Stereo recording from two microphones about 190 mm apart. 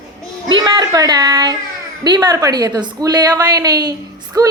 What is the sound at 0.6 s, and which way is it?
A woman's voice, 20° right (ahead or behind).